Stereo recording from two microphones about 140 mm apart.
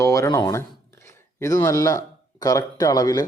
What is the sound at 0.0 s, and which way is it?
A man's voice, 20° left (ahead or behind).